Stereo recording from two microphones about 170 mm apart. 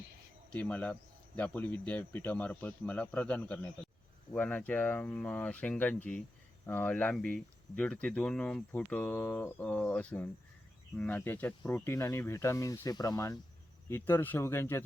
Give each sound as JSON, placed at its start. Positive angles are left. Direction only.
{"t": 0.5, "sound": "speech", "side_deg": 10}